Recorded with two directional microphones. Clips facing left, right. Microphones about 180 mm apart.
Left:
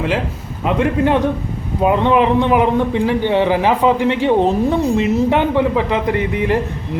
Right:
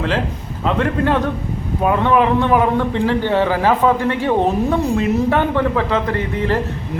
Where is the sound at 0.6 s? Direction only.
15° left (ahead or behind).